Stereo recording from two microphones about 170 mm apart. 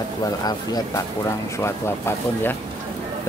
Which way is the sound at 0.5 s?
25° left (ahead or behind).